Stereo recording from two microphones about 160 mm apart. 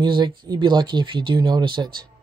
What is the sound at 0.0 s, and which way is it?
Speech, 30° right (ahead or behind).